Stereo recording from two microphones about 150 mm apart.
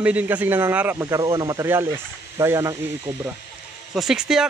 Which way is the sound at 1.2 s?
25° right (ahead or behind).